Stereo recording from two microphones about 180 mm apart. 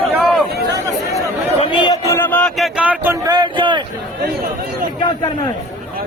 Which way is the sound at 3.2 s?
25° right (ahead or behind).